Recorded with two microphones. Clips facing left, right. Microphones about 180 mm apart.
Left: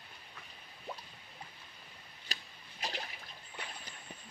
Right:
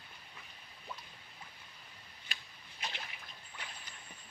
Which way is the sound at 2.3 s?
40° left (ahead or behind).